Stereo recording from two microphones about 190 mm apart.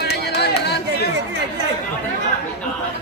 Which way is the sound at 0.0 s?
60° left (ahead or behind).